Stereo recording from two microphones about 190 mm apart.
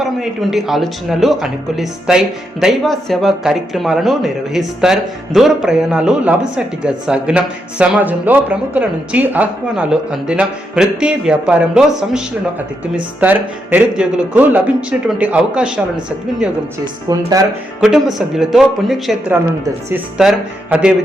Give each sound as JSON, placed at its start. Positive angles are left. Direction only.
{"t": 0.0, "sound": "speech", "side_deg": 0}
{"t": 16.8, "sound": "speech", "side_deg": -20}
{"t": 17.7, "sound": "speech", "side_deg": -5}